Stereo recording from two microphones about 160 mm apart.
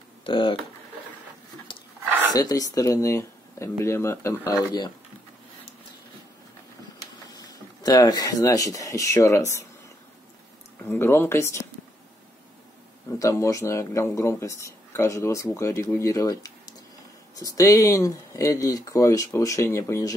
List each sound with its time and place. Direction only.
0.2 s speech: 30° left (ahead or behind)
2.3 s speech: 20° left (ahead or behind)
7.0 s speech: 25° left (ahead or behind)
10.8 s speech: 15° left (ahead or behind)
13.2 s speech: 20° left (ahead or behind)